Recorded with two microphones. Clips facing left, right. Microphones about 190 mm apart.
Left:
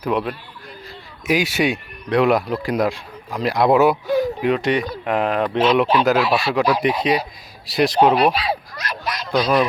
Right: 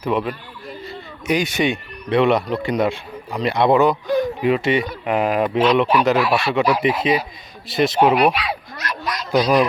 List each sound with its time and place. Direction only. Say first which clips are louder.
0.0 s speech: even; centre (ahead or behind)
5.6 s speech: left 1 dB; 5° left (ahead or behind)
8.1 s speech: even; 35° left (ahead or behind)
9.3 s speech: right 2 dB; 15° right (ahead or behind)